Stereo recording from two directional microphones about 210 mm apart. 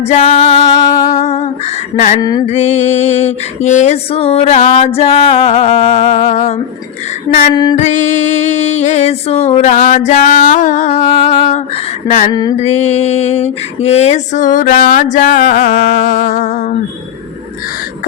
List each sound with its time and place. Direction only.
0.1 s music: 30° left (ahead or behind)
2.5 s music: 35° left (ahead or behind)
7.5 s music: 20° left (ahead or behind)
7.8 s music: 35° left (ahead or behind)
12.3 s mantra: 20° left (ahead or behind)
12.5 s music: 30° left (ahead or behind)